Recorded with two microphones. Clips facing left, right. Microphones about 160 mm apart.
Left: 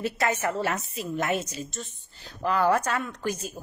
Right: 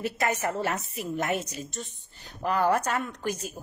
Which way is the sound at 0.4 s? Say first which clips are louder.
Left 1 dB; 15° right (ahead or behind).